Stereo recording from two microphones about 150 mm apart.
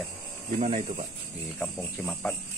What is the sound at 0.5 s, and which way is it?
Speech, 45° right (ahead or behind).